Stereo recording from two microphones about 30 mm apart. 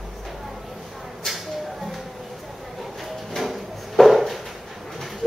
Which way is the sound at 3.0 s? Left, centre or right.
Centre.